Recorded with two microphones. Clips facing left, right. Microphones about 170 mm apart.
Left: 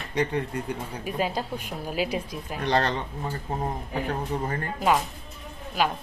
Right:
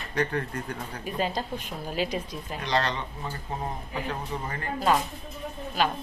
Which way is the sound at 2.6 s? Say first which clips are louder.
Left 3 dB; 45° left (ahead or behind).